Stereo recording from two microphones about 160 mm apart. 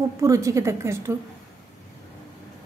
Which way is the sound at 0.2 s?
20° right (ahead or behind).